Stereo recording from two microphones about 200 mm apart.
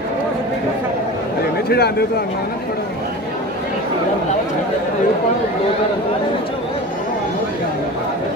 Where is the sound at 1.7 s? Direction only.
55° left (ahead or behind).